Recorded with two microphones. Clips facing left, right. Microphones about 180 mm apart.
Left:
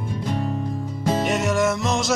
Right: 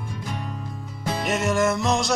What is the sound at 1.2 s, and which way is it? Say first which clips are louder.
Music: right 1 dB; centre (ahead or behind).